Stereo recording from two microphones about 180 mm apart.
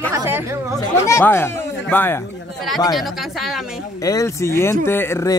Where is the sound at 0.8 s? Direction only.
15° left (ahead or behind).